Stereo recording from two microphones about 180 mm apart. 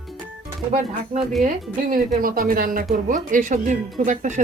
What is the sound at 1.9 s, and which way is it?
Speech, 50° right (ahead or behind).